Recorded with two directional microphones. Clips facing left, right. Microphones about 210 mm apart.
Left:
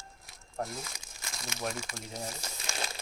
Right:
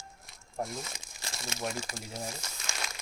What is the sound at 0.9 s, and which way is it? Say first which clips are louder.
Crumpling: right 2 dB; 30° right (ahead or behind).